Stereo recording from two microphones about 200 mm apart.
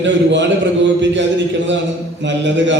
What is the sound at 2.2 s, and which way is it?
Speech, 65° right (ahead or behind).